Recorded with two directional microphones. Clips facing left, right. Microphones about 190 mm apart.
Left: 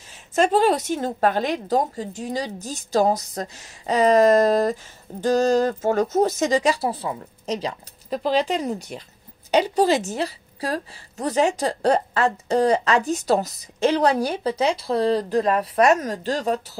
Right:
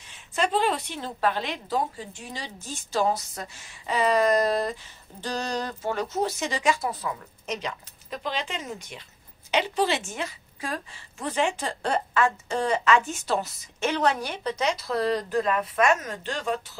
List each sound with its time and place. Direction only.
0.4 s a woman's voice: 45° left (ahead or behind)